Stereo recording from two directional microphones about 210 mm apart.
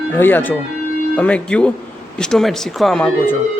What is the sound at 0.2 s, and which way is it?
Speech, 10° left (ahead or behind).